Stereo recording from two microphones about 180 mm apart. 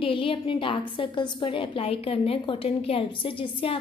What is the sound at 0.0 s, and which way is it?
A woman's voice, 30° left (ahead or behind).